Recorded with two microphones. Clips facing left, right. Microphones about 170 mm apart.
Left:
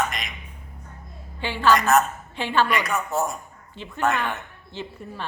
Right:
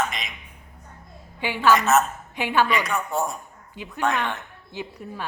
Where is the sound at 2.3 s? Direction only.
15° right (ahead or behind).